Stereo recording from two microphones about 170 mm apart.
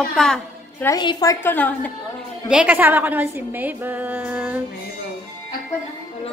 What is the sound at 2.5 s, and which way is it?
A woman's voice, 5° right (ahead or behind).